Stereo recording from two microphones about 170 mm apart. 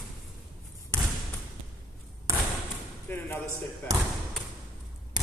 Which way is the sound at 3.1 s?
10° left (ahead or behind).